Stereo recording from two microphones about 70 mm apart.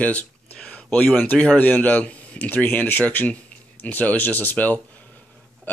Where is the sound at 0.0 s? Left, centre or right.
Centre.